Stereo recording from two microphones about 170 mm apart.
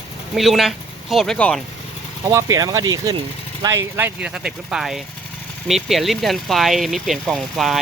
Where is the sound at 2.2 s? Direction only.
20° right (ahead or behind).